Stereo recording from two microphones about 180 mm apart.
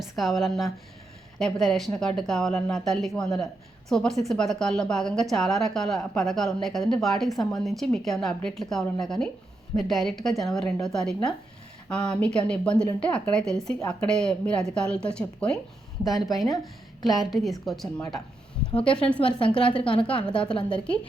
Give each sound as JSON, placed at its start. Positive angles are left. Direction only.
{"t": 0.0, "sound": "a woman's voice", "side_deg": 0}
{"t": 18.7, "sound": "a woman's voice", "side_deg": 30}
{"t": 20.7, "sound": "a woman's voice", "side_deg": 5}